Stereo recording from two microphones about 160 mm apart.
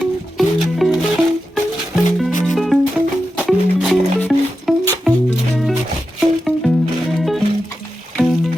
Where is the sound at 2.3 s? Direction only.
50° left (ahead or behind).